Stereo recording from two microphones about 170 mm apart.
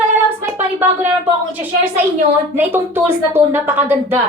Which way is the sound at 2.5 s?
10° right (ahead or behind).